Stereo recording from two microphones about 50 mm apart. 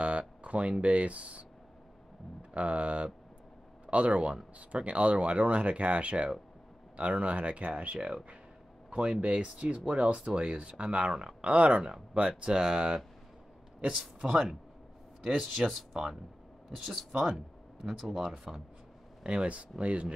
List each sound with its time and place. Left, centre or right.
0.2 s speech: right
2.5 s speech: right; by 18.6 s centre
19.2 s speech: right